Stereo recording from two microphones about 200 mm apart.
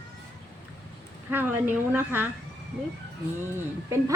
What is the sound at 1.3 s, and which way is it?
A woman's voice, 10° right (ahead or behind).